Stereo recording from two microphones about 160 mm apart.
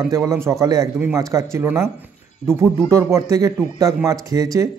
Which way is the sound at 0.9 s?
10° right (ahead or behind).